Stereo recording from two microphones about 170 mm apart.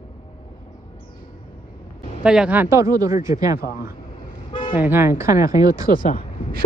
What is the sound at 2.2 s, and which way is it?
Speech, 5° right (ahead or behind).